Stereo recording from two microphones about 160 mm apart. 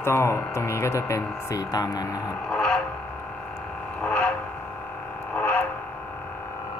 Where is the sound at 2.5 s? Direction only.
5° left (ahead or behind).